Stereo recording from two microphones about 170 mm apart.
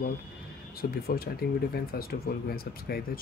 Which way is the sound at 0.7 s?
60° left (ahead or behind).